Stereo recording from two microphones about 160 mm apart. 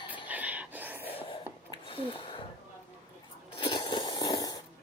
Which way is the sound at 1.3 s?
30° left (ahead or behind).